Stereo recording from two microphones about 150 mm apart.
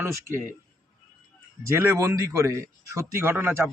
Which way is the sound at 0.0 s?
15° right (ahead or behind).